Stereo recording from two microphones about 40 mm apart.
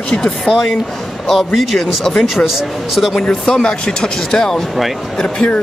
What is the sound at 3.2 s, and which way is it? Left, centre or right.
Speech, left.